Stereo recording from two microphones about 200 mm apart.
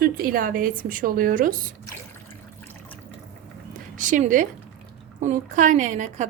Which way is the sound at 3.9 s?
40° right (ahead or behind).